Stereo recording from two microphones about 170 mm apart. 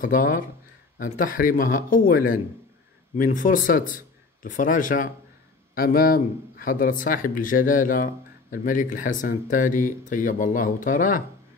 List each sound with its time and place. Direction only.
0.0 s a man's voice: 55° left (ahead or behind)